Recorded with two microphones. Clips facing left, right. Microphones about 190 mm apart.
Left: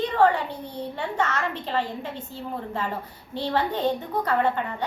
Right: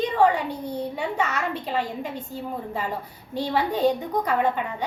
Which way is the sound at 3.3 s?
10° right (ahead or behind).